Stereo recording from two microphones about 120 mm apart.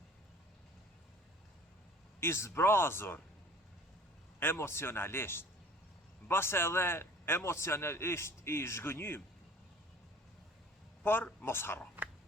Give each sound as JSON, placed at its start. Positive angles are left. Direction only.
{"t": 2.2, "sound": "a man's voice", "side_deg": 20}
{"t": 4.4, "sound": "a man's voice", "side_deg": 20}
{"t": 11.0, "sound": "a man's voice", "side_deg": 15}